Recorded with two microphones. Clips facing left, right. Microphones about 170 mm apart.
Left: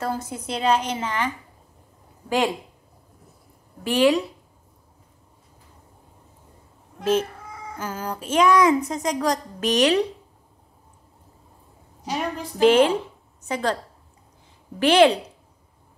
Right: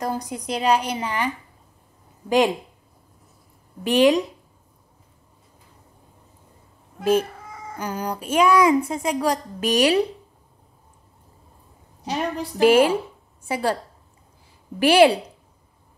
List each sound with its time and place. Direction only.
0.0 s a woman's voice: 15° right (ahead or behind)
3.8 s speech: 20° right (ahead or behind)
7.0 s a woman's voice: 10° right (ahead or behind)
12.4 s a woman's voice: 10° right (ahead or behind)
14.8 s a woman's voice: 10° right (ahead or behind)